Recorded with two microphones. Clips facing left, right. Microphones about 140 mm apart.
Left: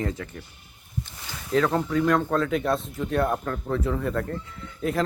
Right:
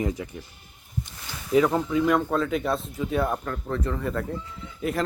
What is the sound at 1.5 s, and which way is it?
Speech, 10° right (ahead or behind).